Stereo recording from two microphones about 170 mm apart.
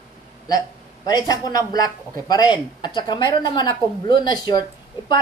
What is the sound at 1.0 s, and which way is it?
Speech, 20° left (ahead or behind).